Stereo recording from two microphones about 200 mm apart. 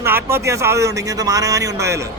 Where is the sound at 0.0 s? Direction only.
10° right (ahead or behind).